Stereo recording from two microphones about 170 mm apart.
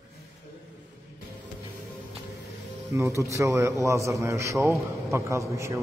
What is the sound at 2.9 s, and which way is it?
A man's voice, 15° right (ahead or behind).